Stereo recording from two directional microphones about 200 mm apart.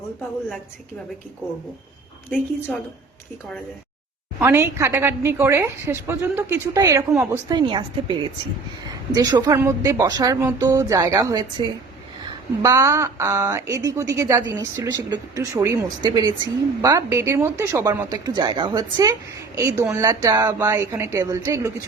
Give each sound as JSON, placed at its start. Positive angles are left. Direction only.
{"t": 4.4, "sound": "speech", "side_deg": -10}